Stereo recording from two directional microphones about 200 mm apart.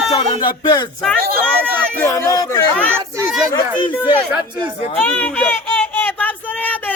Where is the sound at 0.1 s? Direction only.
25° left (ahead or behind).